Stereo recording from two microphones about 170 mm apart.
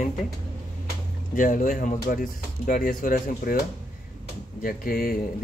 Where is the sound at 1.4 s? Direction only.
50° left (ahead or behind).